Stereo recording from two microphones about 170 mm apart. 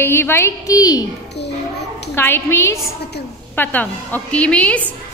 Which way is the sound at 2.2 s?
15° left (ahead or behind).